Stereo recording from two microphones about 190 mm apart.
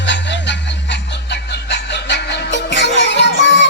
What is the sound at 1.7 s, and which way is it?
Music, 65° left (ahead or behind).